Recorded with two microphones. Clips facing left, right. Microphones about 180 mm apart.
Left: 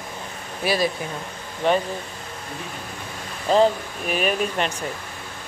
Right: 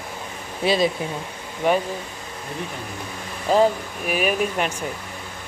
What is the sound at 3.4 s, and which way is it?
Speech, 10° right (ahead or behind).